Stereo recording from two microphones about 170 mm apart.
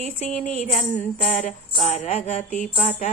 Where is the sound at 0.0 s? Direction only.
45° left (ahead or behind).